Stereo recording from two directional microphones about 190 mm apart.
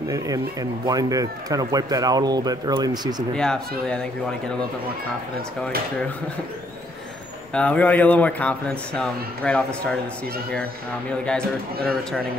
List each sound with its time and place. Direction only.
0.1 s speech: 20° right (ahead or behind)
3.3 s speech: 5° left (ahead or behind)
7.5 s speech: 5° left (ahead or behind)